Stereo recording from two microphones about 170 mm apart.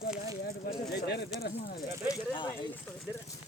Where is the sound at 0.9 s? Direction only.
75° left (ahead or behind).